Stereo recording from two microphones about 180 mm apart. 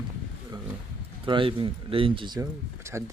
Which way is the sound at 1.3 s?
30° right (ahead or behind).